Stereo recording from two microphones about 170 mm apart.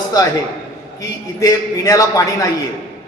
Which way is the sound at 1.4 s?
20° left (ahead or behind).